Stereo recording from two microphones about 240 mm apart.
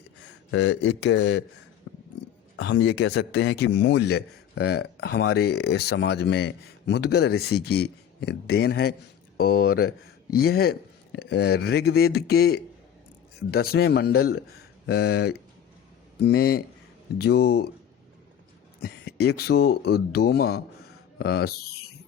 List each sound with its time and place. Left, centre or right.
0.5 s speech: left
1.9 s a sound: left
2.6 s speech: left
18.8 s speech: left